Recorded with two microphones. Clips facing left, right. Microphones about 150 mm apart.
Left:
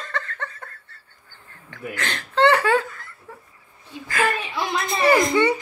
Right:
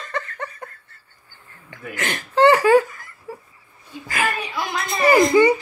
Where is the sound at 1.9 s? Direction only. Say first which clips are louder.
Right 3 dB; 15° right (ahead or behind).